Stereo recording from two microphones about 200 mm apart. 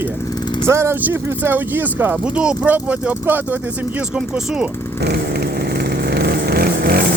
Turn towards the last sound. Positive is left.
turn(degrees=-50)  # may be behind; listen again after turning